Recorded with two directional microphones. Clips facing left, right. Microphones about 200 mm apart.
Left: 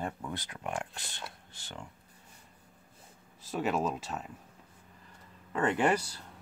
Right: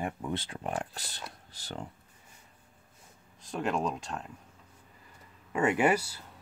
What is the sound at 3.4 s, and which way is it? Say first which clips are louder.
Speech: even; 5° left (ahead or behind).